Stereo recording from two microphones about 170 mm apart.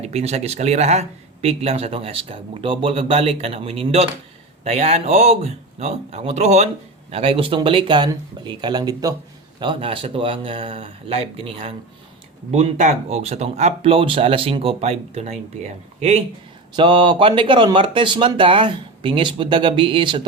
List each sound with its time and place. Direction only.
0.0 s speech: 40° right (ahead or behind)